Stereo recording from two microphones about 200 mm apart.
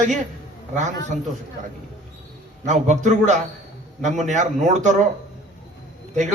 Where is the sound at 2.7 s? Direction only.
35° right (ahead or behind).